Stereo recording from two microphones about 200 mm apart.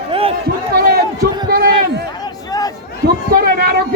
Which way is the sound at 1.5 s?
50° right (ahead or behind).